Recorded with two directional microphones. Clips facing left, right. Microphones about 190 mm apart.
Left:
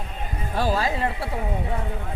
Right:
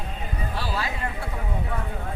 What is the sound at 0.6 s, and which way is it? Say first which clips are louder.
Speech: left 8 dB; 45° left (ahead or behind).